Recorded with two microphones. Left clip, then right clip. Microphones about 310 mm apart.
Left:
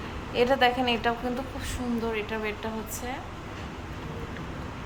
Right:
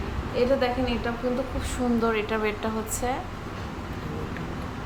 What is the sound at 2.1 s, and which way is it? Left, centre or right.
Speech, centre.